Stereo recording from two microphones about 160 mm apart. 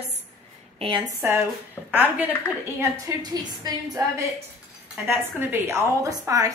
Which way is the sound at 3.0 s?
25° right (ahead or behind).